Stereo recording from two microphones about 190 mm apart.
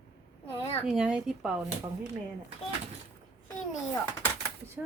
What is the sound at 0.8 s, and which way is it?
Speech, 5° right (ahead or behind).